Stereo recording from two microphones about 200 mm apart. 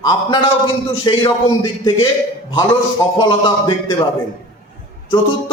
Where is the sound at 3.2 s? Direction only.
20° left (ahead or behind).